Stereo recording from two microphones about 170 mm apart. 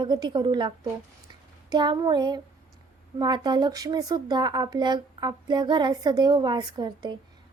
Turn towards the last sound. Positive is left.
turn(degrees=-25)  # may be behind; listen again after turning